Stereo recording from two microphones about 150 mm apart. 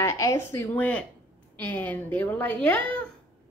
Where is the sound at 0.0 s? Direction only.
20° left (ahead or behind).